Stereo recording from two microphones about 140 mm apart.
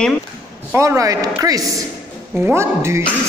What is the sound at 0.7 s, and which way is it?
Speech, 20° right (ahead or behind).